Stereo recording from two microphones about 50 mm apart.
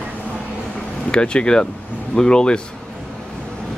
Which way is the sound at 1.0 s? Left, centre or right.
Centre.